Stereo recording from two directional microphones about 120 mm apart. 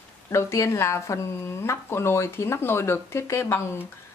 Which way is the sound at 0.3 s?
25° left (ahead or behind).